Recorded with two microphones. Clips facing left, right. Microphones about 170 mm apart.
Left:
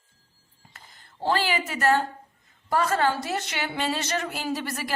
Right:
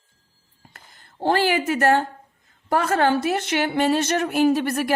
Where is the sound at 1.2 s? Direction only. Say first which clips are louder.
Right 6 dB; 50° right (ahead or behind).